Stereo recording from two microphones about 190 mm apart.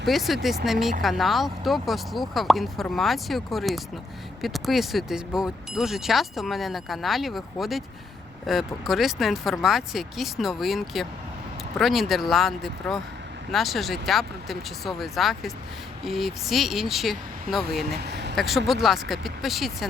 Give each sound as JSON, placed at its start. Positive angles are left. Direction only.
{"t": 0.0, "sound": "speech", "side_deg": 0}
{"t": 17.8, "sound": "speech", "side_deg": -60}
{"t": 18.3, "sound": "speech", "side_deg": 0}